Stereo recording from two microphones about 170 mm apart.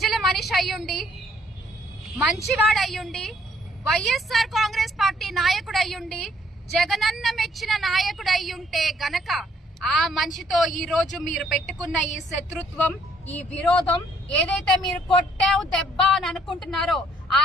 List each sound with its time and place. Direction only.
0.0 s a sound: centre (ahead or behind)
2.1 s a woman's voice: centre (ahead or behind)
12.0 s a woman's voice: 45° left (ahead or behind)
12.5 s a woman's voice: 10° left (ahead or behind)